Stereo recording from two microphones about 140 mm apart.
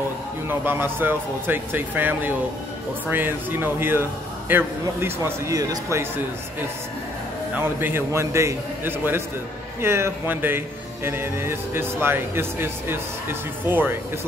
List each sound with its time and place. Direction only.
0.5 s a man's voice: 15° right (ahead or behind)